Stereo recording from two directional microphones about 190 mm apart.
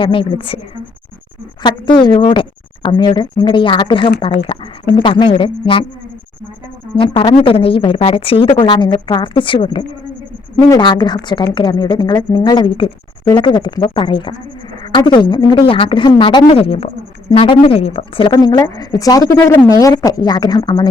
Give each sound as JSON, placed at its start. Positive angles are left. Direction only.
{"t": 0.0, "sound": "a woman's voice", "side_deg": 25}
{"t": 1.6, "sound": "a woman's voice", "side_deg": 25}
{"t": 6.9, "sound": "a woman's voice", "side_deg": 30}
{"t": 18.3, "sound": "a woman's voice", "side_deg": 20}